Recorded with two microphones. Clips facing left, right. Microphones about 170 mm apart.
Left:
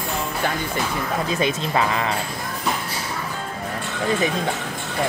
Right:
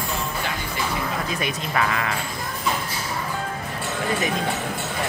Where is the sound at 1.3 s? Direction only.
25° left (ahead or behind).